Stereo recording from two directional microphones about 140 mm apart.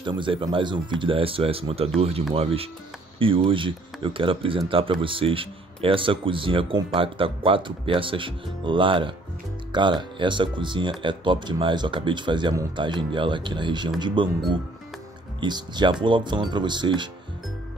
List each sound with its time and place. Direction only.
0.0 s speech: 35° right (ahead or behind)
15.4 s speech: 30° right (ahead or behind)